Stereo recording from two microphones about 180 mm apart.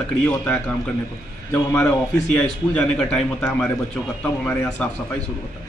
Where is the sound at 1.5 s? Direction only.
10° left (ahead or behind).